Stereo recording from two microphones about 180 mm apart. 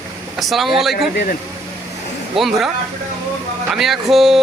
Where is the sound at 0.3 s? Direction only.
Centre (ahead or behind).